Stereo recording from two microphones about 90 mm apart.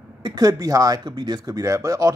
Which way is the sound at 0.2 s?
45° right (ahead or behind).